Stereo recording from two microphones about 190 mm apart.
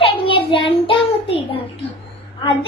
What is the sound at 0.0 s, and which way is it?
Child singing, 30° left (ahead or behind).